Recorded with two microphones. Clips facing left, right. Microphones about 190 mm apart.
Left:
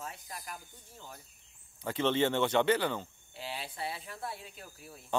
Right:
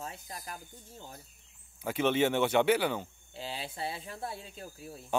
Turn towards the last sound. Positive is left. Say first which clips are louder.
# right 5 dB
turn(degrees=-25)  # may be behind; listen again after turning